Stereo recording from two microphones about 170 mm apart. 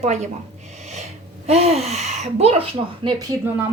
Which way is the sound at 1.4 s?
35° right (ahead or behind).